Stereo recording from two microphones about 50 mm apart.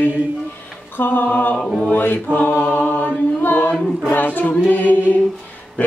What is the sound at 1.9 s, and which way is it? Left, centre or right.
Chant, left.